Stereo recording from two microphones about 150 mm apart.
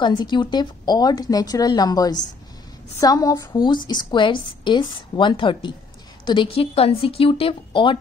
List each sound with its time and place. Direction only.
0.0 s a woman's voice: 30° left (ahead or behind)